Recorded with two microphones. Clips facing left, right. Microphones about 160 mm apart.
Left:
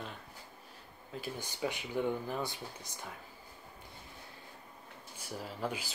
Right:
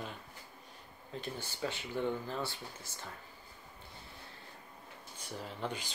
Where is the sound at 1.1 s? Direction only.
10° left (ahead or behind).